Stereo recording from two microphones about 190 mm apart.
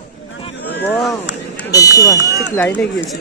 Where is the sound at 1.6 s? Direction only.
20° left (ahead or behind).